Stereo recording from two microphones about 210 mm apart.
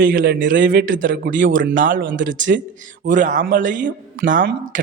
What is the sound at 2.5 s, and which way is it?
Speech, 50° right (ahead or behind).